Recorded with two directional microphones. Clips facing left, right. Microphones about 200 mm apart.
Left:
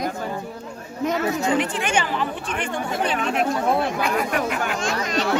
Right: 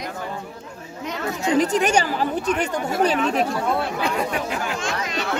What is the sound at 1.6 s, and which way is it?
A woman's voice, 40° right (ahead or behind).